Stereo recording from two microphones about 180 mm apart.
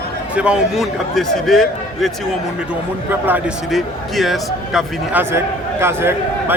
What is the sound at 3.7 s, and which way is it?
A man's voice, centre (ahead or behind).